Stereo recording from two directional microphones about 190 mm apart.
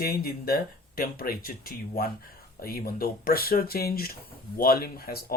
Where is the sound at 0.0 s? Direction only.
50° left (ahead or behind).